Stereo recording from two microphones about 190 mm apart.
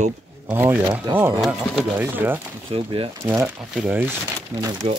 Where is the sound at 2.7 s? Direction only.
30° right (ahead or behind).